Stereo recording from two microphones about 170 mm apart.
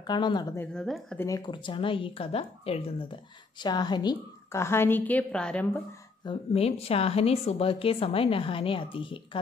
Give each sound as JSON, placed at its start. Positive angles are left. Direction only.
{"t": 0.0, "sound": "speech", "side_deg": 25}
{"t": 0.6, "sound": "a woman's voice", "side_deg": 0}
{"t": 1.1, "sound": "speech", "side_deg": 15}
{"t": 6.2, "sound": "a woman's voice", "side_deg": 35}